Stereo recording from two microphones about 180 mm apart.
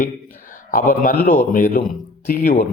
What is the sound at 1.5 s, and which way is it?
Speech, 55° left (ahead or behind).